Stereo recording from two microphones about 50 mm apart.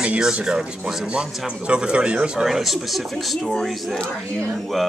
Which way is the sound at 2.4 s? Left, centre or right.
Centre.